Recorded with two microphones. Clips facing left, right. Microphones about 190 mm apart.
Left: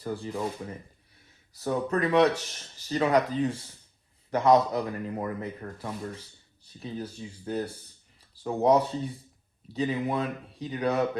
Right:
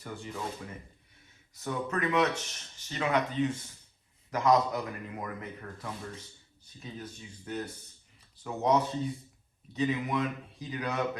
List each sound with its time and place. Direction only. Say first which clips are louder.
0.0 s speech: left 8 dB; 30° left (ahead or behind)
1.5 s speech: left 5 dB; 35° left (ahead or behind)